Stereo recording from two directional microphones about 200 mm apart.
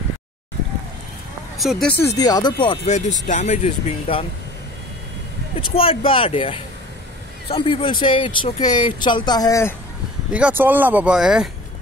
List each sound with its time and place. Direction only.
1.6 s speech: centre (ahead or behind)
2.1 s speech: 20° left (ahead or behind)
2.9 s speech: 35° left (ahead or behind)
5.8 s speech: 25° left (ahead or behind)
10.3 s speech: 10° right (ahead or behind)